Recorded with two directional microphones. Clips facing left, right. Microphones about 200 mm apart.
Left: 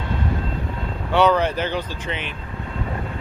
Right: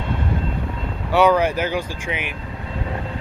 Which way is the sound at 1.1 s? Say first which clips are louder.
Right 2 dB; 10° right (ahead or behind).